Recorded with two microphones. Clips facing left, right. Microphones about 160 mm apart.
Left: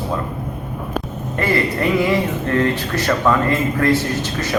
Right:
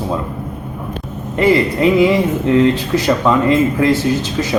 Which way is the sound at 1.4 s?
15° right (ahead or behind).